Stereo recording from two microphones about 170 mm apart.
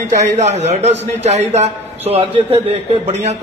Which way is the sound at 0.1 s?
40° right (ahead or behind).